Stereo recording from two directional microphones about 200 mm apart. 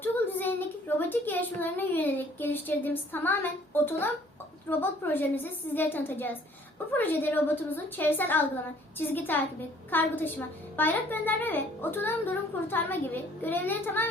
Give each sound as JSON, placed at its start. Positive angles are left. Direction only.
{"t": 0.0, "sound": "a woman's voice", "side_deg": 10}